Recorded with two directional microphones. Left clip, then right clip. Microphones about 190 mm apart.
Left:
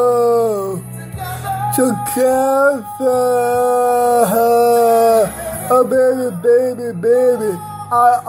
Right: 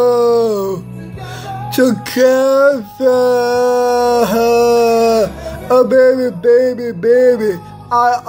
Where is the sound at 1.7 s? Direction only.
25° right (ahead or behind).